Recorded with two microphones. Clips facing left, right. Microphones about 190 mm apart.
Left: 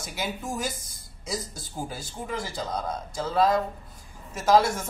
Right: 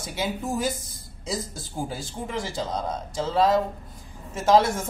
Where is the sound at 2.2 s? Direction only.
25° right (ahead or behind).